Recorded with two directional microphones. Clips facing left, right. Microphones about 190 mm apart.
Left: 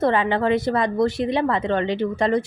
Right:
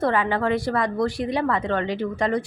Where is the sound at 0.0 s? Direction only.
25° left (ahead or behind).